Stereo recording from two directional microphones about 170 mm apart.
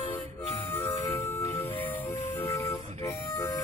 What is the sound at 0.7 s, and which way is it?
Music, 10° left (ahead or behind).